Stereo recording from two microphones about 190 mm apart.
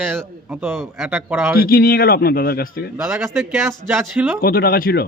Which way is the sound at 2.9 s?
15° right (ahead or behind).